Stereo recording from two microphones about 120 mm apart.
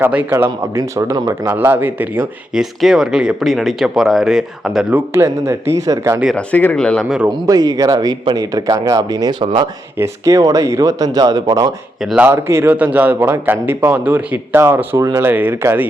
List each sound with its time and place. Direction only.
0.0 s a man's voice: 15° right (ahead or behind)
2.5 s speech: 5° right (ahead or behind)
4.9 s speech: 20° right (ahead or behind)
6.3 s speech: 15° left (ahead or behind)
7.3 s speech: 35° right (ahead or behind)
12.0 s a man's voice: 10° right (ahead or behind)
12.3 s a man's voice: 20° right (ahead or behind)